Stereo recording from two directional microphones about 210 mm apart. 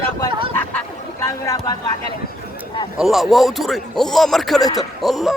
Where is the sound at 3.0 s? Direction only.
Centre (ahead or behind).